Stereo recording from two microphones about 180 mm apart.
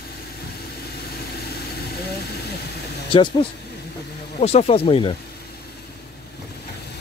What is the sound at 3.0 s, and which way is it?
Speech, 25° left (ahead or behind).